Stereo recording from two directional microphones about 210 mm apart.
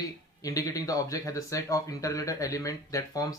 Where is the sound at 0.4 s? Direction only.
15° left (ahead or behind).